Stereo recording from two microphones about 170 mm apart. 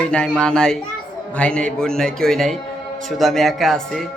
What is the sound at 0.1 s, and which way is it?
A man's voice, 5° left (ahead or behind).